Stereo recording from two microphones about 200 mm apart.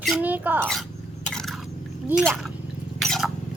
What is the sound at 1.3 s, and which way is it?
Drip, centre (ahead or behind).